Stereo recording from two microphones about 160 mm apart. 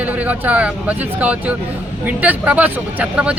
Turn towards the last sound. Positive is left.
turn(degrees=-5)  # may be behind; listen again after turning